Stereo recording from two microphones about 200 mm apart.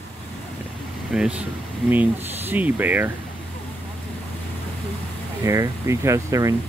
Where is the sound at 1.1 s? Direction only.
5° right (ahead or behind).